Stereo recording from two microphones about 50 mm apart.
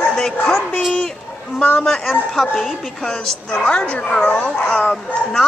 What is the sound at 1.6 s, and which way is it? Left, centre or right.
Speech, left.